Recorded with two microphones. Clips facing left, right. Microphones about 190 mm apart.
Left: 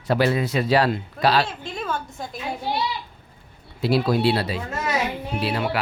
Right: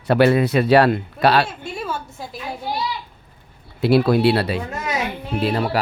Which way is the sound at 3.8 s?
60° right (ahead or behind).